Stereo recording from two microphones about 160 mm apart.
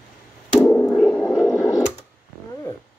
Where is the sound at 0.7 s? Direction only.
10° left (ahead or behind).